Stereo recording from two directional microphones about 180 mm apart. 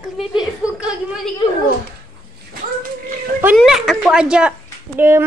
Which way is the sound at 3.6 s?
Centre (ahead or behind).